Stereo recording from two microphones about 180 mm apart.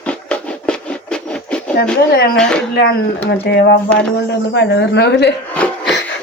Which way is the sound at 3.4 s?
70° left (ahead or behind).